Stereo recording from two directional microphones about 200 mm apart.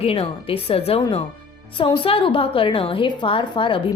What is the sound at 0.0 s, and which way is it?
A woman's voice, 30° left (ahead or behind).